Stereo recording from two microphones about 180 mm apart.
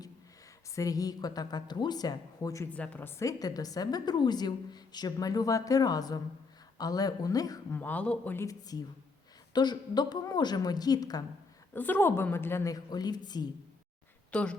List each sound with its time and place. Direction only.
0.8 s a woman's voice: 20° left (ahead or behind)
7.8 s a woman's voice: 10° left (ahead or behind)
11.7 s a woman's voice: 10° left (ahead or behind)
14.3 s speech: 5° left (ahead or behind)